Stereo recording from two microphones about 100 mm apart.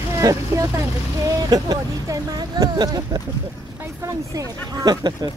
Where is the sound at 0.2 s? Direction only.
30° right (ahead or behind).